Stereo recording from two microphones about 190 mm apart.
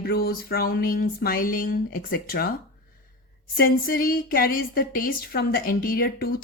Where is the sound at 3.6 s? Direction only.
50° left (ahead or behind).